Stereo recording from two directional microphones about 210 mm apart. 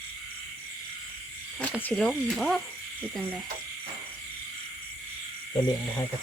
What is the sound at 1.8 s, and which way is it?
Speech, 5° left (ahead or behind).